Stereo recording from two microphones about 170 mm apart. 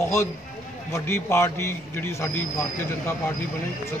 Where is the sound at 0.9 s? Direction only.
15° left (ahead or behind).